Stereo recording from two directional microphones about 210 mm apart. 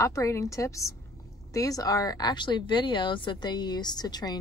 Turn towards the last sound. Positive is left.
turn(degrees=20)  # may be behind; listen again after turning